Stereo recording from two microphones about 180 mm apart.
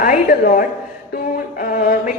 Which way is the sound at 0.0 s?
50° left (ahead or behind).